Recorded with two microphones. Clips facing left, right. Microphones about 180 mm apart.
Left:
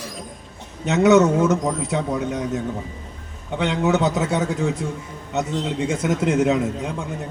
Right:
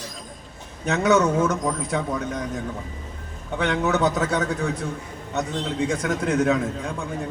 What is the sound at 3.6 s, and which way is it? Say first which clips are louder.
Speech: left 2 dB; 20° left (ahead or behind).